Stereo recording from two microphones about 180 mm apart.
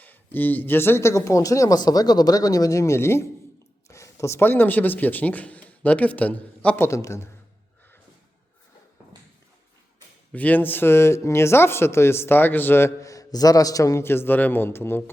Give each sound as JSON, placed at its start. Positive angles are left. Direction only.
{"t": 0.0, "sound": "speech", "side_deg": 10}
{"t": 10.3, "sound": "speech", "side_deg": 10}